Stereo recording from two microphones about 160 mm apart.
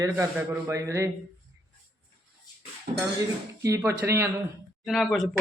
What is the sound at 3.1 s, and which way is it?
Speech, 20° right (ahead or behind).